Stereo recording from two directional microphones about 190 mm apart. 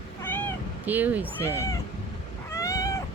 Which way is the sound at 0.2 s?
10° left (ahead or behind).